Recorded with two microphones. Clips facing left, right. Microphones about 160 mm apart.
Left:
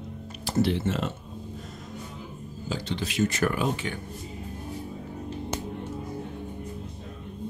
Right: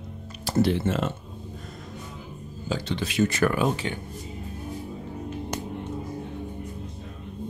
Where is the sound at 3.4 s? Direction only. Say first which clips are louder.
Right 4 dB; 90° right.